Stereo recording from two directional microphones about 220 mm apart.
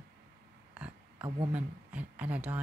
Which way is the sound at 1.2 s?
25° right (ahead or behind).